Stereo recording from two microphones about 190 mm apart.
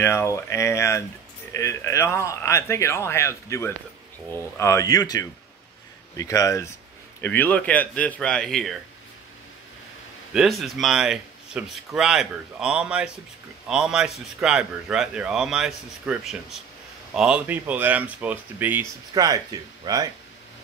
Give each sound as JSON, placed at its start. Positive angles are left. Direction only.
{"t": 0.0, "sound": "speech", "side_deg": 15}
{"t": 10.3, "sound": "a man's voice", "side_deg": 0}